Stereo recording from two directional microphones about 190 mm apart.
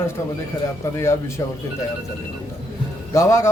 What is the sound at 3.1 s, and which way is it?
Speech, 15° left (ahead or behind).